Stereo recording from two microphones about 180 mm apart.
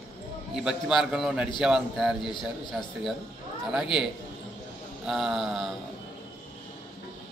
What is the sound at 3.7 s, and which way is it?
A man's voice, 5° right (ahead or behind).